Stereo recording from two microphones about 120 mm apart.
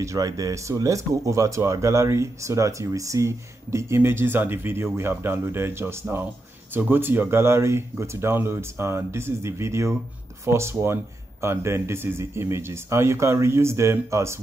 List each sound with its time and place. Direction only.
0.0 s speech: 30° right (ahead or behind)